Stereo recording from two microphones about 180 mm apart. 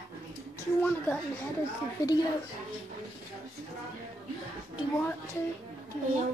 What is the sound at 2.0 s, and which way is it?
Speech, 20° left (ahead or behind).